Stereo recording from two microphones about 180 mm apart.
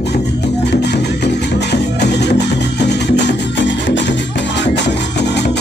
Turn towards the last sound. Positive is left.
turn(degrees=70)  # may be behind; listen again after turning